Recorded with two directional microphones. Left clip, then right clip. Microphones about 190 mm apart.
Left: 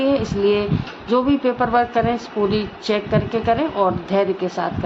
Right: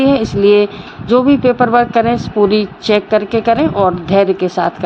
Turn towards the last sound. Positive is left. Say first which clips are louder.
# right 8 dB
turn(degrees=-30)  # may be behind; listen again after turning